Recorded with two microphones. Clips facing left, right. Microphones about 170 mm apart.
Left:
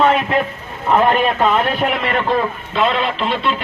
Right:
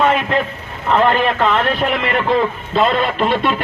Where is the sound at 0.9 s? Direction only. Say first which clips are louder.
Even; 10° left (ahead or behind).